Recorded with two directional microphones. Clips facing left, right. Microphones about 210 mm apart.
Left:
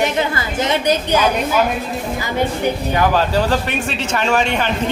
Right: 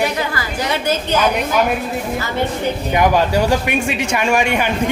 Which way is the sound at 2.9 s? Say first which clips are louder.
Right 4 dB; 15° right (ahead or behind).